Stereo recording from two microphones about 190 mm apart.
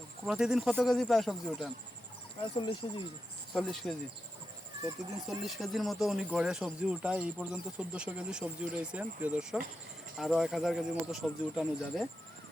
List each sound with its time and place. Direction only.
0.3 s speech: 5° right (ahead or behind)
2.4 s speech: 25° left (ahead or behind)
3.5 s speech: centre (ahead or behind)
5.4 s speech: centre (ahead or behind)